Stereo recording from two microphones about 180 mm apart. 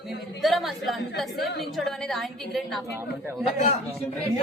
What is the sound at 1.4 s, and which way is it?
Speech, 65° left (ahead or behind).